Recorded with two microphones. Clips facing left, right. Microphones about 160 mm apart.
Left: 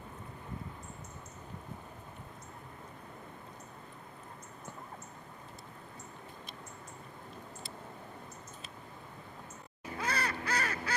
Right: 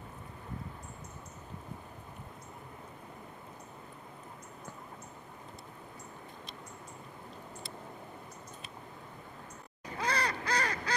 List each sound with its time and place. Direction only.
9.9 s crow: 35° right (ahead or behind)